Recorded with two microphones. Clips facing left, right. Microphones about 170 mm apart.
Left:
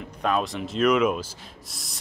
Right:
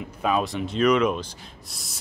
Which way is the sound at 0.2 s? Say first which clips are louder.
Right 1 dB; 5° right (ahead or behind).